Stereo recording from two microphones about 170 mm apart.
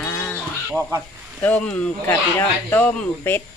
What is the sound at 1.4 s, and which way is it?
Speech, 5° left (ahead or behind).